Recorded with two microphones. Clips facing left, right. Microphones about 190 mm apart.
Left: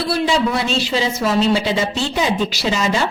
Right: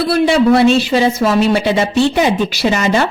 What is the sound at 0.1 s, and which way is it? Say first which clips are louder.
Speech: right 8 dB; 60° right (ahead or behind).